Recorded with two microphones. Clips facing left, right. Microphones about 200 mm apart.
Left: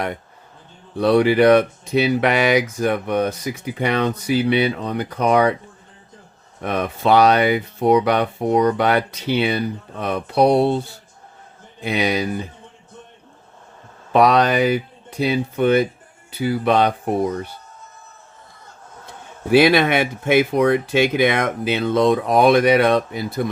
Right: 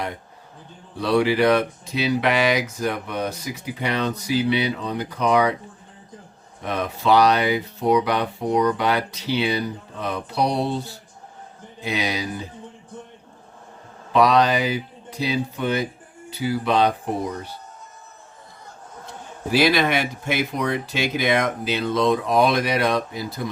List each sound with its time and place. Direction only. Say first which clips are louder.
0.9 s speech: left 5 dB; 50° left (ahead or behind)
6.6 s speech: left 4 dB; 55° left (ahead or behind)
11.8 s speech: left 5 dB; 55° left (ahead or behind)
14.1 s speech: left 2 dB; 55° left (ahead or behind)
19.5 s speech: left 5 dB; 55° left (ahead or behind)